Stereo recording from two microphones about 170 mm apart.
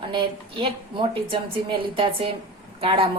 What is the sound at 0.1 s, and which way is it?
Speech, 30° right (ahead or behind).